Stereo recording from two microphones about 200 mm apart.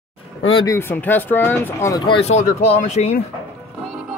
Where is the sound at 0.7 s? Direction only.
10° left (ahead or behind); by 3.1 s 35° left (ahead or behind).